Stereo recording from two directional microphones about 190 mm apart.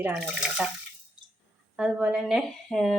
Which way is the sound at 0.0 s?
Centre (ahead or behind).